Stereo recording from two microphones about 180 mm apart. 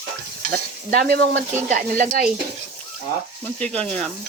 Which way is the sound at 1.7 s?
45° right (ahead or behind).